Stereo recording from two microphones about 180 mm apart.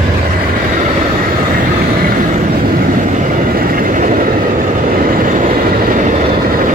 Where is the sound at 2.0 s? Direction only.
50° right (ahead or behind).